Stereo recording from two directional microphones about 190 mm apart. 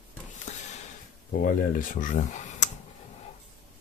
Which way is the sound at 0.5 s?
35° left (ahead or behind).